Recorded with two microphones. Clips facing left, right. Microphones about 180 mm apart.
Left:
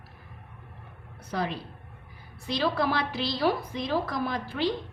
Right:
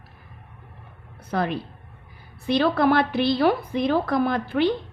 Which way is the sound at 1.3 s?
55° right (ahead or behind).